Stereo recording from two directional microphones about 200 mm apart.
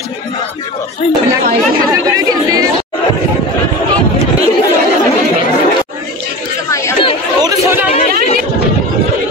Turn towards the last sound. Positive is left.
turn(degrees=-10)  # may be behind; listen again after turning